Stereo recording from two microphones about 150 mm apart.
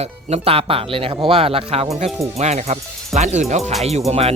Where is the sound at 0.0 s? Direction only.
45° right (ahead or behind).